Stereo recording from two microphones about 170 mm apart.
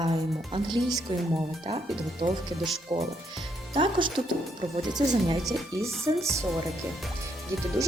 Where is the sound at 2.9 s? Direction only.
35° right (ahead or behind).